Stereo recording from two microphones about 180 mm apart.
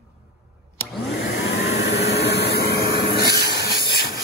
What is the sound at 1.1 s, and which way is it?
Vacuum cleaner, 80° left.